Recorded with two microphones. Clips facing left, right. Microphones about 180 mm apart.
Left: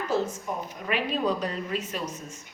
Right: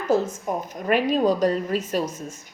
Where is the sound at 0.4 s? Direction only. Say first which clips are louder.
Right 7 dB; 40° right (ahead or behind).